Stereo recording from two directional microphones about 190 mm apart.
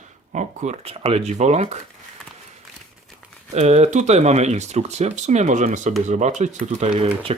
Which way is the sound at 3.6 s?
35° right (ahead or behind).